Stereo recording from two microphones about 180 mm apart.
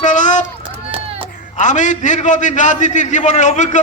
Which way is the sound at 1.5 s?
45° left (ahead or behind).